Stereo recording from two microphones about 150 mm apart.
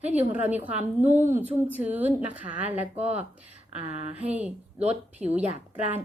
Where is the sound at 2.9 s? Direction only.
45° right (ahead or behind).